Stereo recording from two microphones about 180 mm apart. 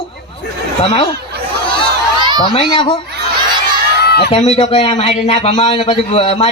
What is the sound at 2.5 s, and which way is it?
Speech, 30° left (ahead or behind).